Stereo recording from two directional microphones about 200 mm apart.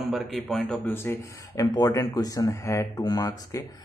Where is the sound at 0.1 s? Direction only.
Centre (ahead or behind).